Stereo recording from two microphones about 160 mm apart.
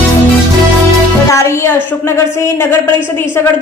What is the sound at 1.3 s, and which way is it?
A woman's voice, 15° left (ahead or behind).